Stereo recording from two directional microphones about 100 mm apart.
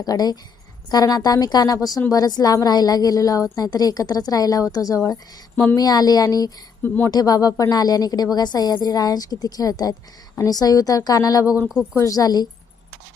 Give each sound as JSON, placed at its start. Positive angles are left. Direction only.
{"t": 0.0, "sound": "a woman's voice", "side_deg": 40}
{"t": 6.8, "sound": "speech", "side_deg": 20}
{"t": 7.1, "sound": "a woman's voice", "side_deg": 40}